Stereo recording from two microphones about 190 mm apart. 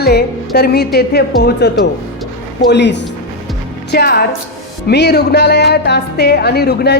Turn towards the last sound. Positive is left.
turn(degrees=55)  # may be behind; listen again after turning